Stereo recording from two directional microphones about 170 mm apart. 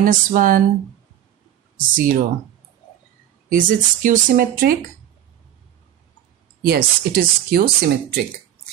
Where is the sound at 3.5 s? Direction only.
50° right (ahead or behind).